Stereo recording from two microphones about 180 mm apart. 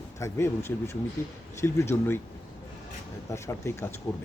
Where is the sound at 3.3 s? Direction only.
15° left (ahead or behind).